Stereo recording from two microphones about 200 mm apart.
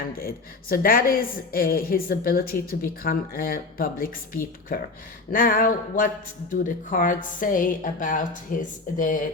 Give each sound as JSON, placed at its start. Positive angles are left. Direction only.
{"t": 0.0, "sound": "a woman's voice", "side_deg": 45}